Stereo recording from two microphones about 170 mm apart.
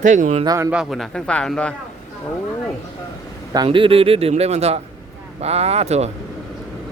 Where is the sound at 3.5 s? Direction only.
25° right (ahead or behind).